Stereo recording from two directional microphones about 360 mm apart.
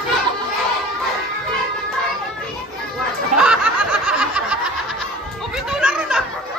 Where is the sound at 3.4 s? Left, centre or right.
Centre.